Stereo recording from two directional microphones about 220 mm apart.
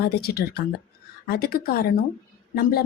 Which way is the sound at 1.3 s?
45° left (ahead or behind).